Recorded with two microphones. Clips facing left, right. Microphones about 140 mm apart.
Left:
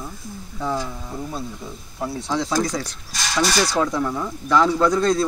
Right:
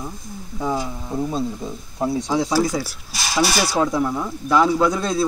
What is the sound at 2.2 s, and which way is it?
Speech, 15° right (ahead or behind).